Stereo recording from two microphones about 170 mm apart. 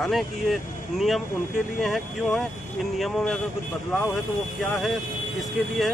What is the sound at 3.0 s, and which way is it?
Speech, centre (ahead or behind).